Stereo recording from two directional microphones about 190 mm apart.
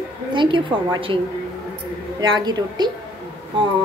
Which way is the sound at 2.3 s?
20° right (ahead or behind).